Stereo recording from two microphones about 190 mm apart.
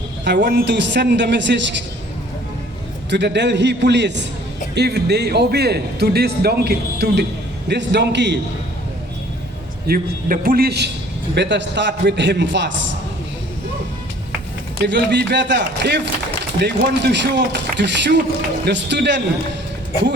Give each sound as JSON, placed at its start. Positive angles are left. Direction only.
{"t": 0.3, "sound": "a man's voice", "side_deg": -70}
{"t": 3.1, "sound": "speech", "side_deg": -65}
{"t": 9.8, "sound": "a man's voice", "side_deg": -50}
{"t": 11.3, "sound": "a man's voice", "side_deg": -70}
{"t": 14.8, "sound": "a man's voice", "side_deg": -65}